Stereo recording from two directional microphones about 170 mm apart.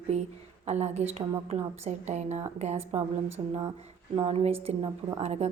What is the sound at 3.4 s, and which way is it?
A woman's voice, 30° right (ahead or behind).